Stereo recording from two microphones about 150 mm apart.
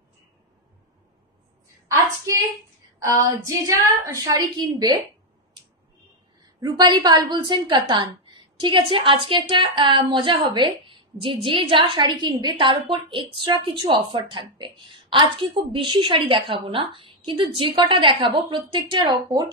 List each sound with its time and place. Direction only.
3.0 s a woman's voice: 20° right (ahead or behind)
6.6 s a woman's voice: 30° right (ahead or behind)